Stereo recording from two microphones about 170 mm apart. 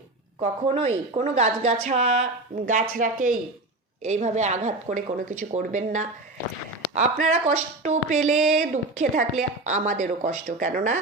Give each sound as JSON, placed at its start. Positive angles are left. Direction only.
{"t": 0.6, "sound": "speech", "side_deg": -35}